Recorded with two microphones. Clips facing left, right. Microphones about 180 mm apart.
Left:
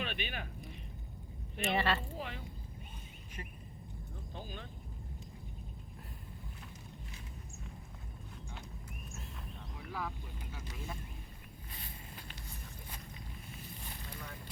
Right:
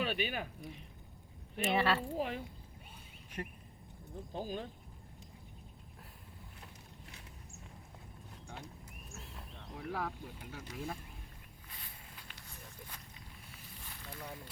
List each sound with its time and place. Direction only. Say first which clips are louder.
0.0 s speech: right 5 dB; 40° right (ahead or behind)
1.5 s speech: right 2 dB; 5° right (ahead or behind)
2.1 s speech: right 6 dB; 40° right (ahead or behind)
3.4 s speech: right 6 dB; 55° right (ahead or behind)
4.4 s speech: right 7 dB; 40° right (ahead or behind)
9.7 s a sound: right 3 dB; 55° right (ahead or behind)